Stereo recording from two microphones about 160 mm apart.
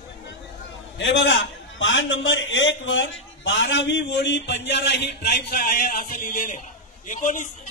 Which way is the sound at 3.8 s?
90° left.